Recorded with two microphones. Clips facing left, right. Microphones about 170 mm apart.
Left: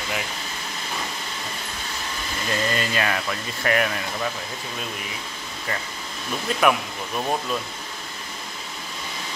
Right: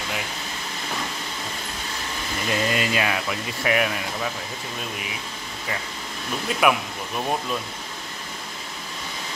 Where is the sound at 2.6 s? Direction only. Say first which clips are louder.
Even; 5° right (ahead or behind).